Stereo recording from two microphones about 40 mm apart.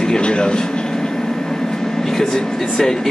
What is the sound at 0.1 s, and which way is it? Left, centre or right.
Speech, left.